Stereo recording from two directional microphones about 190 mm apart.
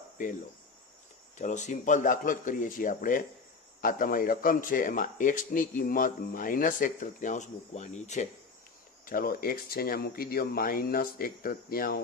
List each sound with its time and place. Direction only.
0.2 s a man's voice: 45° left (ahead or behind)
1.4 s a man's voice: 40° left (ahead or behind)
9.0 s a man's voice: 50° left (ahead or behind)